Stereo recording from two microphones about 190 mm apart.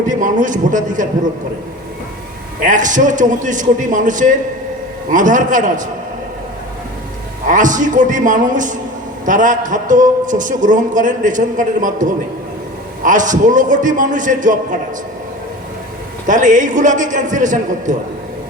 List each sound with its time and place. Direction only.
0.1 s a man's voice: 45° right (ahead or behind)
2.6 s a man's voice: 40° right (ahead or behind)
7.4 s a man's voice: 45° right (ahead or behind)
16.2 s a man's voice: 40° right (ahead or behind)